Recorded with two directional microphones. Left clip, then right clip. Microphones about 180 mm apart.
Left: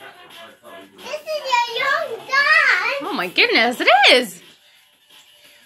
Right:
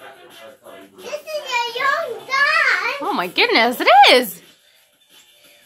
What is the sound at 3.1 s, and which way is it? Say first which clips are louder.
Speech: right 1 dB; 15° right (ahead or behind).